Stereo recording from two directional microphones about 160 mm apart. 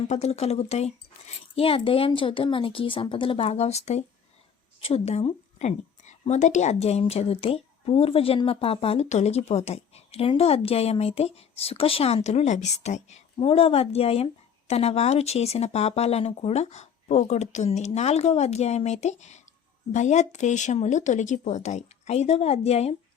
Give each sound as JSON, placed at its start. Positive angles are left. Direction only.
{"t": 0.1, "sound": "a woman's voice", "side_deg": 40}